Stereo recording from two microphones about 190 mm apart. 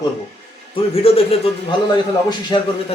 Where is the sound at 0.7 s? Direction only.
30° left (ahead or behind).